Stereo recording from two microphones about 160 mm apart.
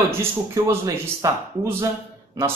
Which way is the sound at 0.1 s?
15° right (ahead or behind).